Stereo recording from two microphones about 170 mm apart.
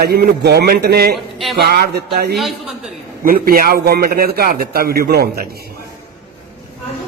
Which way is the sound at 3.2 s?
55° right (ahead or behind).